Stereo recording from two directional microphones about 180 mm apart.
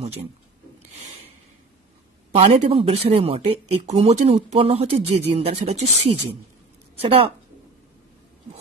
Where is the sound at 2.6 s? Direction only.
35° right (ahead or behind).